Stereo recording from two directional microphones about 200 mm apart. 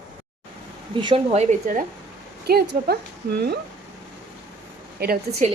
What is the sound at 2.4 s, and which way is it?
Speech, 50° right (ahead or behind).